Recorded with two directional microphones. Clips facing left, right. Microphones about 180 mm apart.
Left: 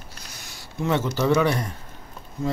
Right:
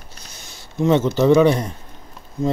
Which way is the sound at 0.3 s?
25° right (ahead or behind).